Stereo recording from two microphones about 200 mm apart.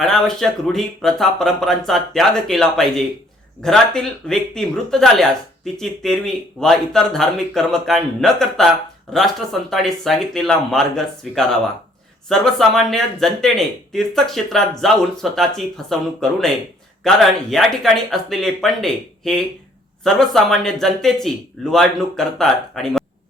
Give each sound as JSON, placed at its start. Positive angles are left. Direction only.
{"t": 0.0, "sound": "speech", "side_deg": 0}